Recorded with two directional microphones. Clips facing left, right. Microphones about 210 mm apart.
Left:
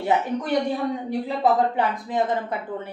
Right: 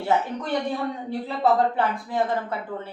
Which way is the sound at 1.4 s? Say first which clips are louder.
Even; 15° left (ahead or behind).